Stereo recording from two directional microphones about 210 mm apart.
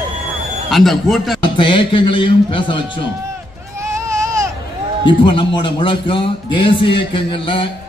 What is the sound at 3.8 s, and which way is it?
Baby cry, 15° right (ahead or behind).